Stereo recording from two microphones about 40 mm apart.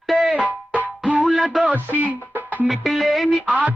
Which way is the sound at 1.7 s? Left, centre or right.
Right.